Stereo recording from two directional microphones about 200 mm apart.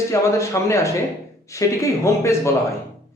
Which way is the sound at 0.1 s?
15° left (ahead or behind).